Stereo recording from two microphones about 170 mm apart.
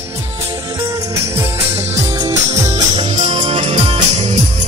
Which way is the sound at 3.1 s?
40° right (ahead or behind).